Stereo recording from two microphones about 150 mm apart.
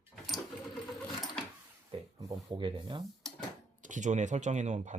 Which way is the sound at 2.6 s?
35° right (ahead or behind).